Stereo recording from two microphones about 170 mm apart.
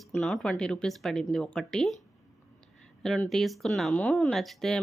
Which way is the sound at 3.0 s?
Centre (ahead or behind).